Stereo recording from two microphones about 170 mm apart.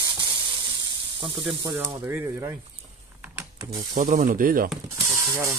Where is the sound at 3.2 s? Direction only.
15° right (ahead or behind).